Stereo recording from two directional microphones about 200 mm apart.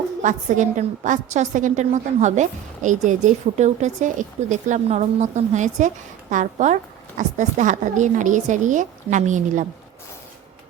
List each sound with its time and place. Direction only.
0.2 s a woman's voice: 40° right (ahead or behind)